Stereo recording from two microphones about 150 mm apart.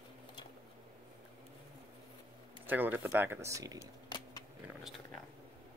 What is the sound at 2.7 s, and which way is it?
Speech, 10° right (ahead or behind).